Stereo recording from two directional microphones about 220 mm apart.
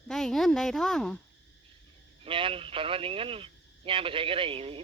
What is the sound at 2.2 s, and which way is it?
Speech, 25° right (ahead or behind).